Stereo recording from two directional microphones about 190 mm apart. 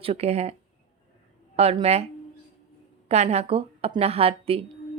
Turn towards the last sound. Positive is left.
turn(degrees=-30)  # may be behind; listen again after turning